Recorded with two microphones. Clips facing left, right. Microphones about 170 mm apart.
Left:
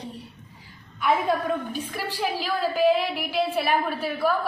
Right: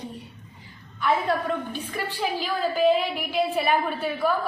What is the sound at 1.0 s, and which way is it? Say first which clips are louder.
A woman's voice: left 1 dB; 10° left (ahead or behind).